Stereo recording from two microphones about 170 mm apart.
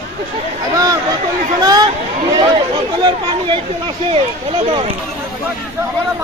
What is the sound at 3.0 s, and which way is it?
Speech, 30° right (ahead or behind).